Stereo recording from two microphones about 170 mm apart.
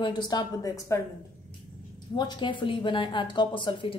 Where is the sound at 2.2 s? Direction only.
25° left (ahead or behind).